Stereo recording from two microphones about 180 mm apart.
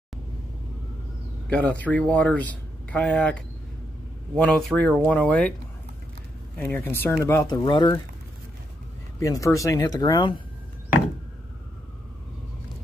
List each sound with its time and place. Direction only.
1.5 s speech: 5° left (ahead or behind)
4.4 s speech: 5° left (ahead or behind)
6.5 s speech: 10° left (ahead or behind); by 8.0 s 25° left (ahead or behind)
9.2 s speech: 20° left (ahead or behind)